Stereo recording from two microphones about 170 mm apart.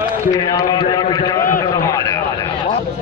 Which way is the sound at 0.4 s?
25° left (ahead or behind).